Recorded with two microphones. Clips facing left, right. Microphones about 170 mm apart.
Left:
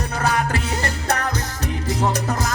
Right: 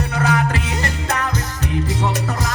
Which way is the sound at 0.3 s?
35° left (ahead or behind).